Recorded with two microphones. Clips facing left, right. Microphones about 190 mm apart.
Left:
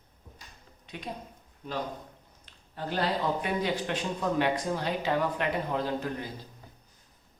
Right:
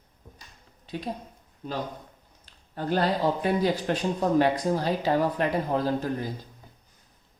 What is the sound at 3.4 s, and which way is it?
Speech, 35° right (ahead or behind).